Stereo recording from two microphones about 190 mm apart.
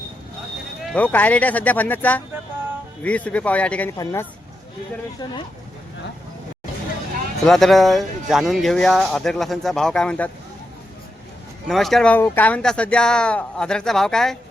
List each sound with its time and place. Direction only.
0.8 s speech: 10° left (ahead or behind); by 5.5 s 25° left (ahead or behind)
7.4 s speech: centre (ahead or behind)
11.7 s speech: centre (ahead or behind)